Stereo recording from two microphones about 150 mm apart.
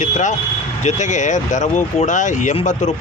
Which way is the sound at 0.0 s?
55° left (ahead or behind).